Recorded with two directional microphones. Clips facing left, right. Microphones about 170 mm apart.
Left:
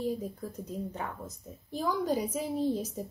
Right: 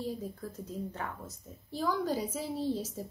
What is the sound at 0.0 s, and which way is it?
A woman's voice, 15° left (ahead or behind).